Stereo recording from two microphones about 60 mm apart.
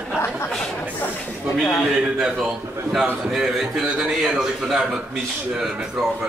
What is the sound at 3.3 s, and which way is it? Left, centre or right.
A man's voice, centre.